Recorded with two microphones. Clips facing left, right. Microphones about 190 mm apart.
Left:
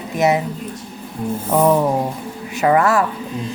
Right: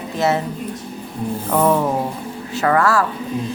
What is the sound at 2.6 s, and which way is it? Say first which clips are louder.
Speech: left 2 dB; 20° left (ahead or behind).